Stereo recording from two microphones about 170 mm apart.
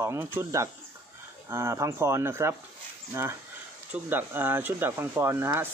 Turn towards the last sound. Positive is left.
turn(degrees=-15)  # may be behind; listen again after turning